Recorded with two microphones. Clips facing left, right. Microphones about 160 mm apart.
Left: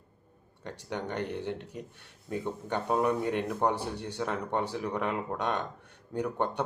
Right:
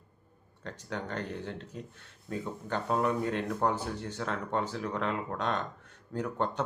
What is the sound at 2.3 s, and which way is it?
Speech, 20° left (ahead or behind).